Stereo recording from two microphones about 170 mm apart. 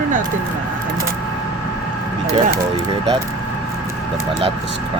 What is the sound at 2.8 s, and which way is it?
Speech, 25° right (ahead or behind).